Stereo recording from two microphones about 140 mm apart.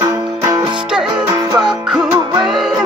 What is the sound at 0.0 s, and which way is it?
Music, 20° right (ahead or behind).